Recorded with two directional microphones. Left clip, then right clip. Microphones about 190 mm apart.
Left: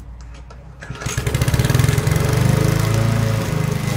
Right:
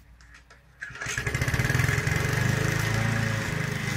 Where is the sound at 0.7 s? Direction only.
25° left (ahead or behind).